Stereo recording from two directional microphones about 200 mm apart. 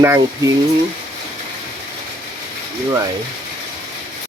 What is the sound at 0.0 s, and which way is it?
Speech, 10° right (ahead or behind).